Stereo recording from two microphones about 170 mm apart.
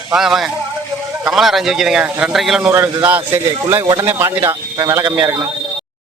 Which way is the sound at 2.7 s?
15° right (ahead or behind).